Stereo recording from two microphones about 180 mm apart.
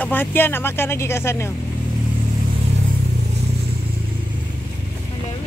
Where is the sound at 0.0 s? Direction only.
10° left (ahead or behind).